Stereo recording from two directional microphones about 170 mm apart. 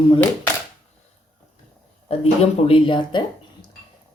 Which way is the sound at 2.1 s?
35° left (ahead or behind).